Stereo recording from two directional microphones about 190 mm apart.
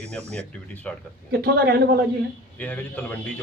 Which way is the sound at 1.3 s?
60° right (ahead or behind).